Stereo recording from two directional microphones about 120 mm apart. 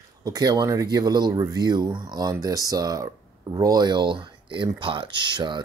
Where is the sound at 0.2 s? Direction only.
30° right (ahead or behind).